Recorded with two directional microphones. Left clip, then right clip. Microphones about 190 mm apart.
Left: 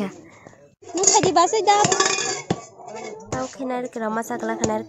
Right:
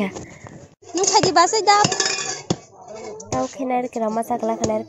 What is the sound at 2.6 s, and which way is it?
Dishes, 25° left (ahead or behind).